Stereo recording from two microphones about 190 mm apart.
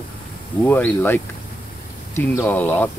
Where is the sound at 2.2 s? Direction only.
10° left (ahead or behind).